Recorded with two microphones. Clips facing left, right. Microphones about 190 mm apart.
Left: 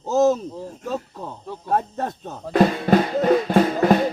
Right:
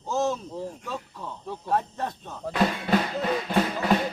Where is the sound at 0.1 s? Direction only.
40° left (ahead or behind).